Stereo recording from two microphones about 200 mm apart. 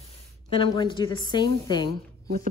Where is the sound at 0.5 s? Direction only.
25° left (ahead or behind).